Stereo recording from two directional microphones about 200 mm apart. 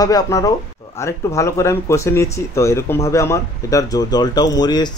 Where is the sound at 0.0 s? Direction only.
20° left (ahead or behind).